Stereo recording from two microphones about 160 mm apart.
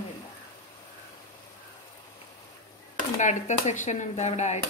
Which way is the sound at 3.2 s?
50° left (ahead or behind).